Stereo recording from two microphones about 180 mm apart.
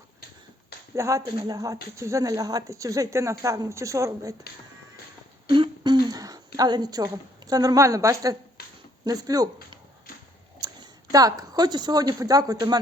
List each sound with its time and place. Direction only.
0.9 s a woman's voice: 15° right (ahead or behind)
5.5 s throat clearing: 25° right (ahead or behind)
6.6 s a woman's voice: 25° right (ahead or behind)
10.6 s speech: 20° right (ahead or behind)